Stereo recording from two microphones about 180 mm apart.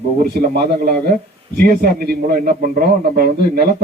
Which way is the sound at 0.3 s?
60° right (ahead or behind).